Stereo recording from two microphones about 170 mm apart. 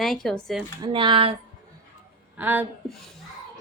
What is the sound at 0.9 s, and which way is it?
Speech, 30° right (ahead or behind).